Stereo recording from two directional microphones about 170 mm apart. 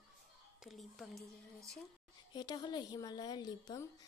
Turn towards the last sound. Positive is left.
turn(degrees=20)  # may be behind; listen again after turning